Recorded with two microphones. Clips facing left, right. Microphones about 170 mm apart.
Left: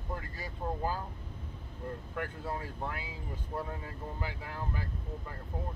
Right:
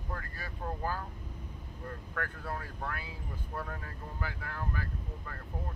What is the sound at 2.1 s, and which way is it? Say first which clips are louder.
Speech: even; 15° left (ahead or behind).